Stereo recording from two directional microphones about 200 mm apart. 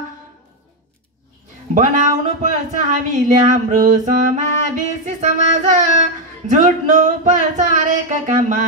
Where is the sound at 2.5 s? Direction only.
40° right (ahead or behind).